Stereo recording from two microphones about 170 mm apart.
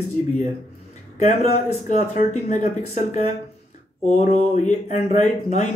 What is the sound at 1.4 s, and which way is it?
Speech, 40° left (ahead or behind).